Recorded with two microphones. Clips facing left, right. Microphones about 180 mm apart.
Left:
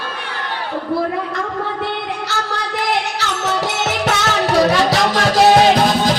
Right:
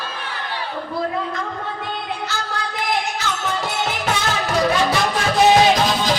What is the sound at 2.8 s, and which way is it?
Music, 75° left (ahead or behind).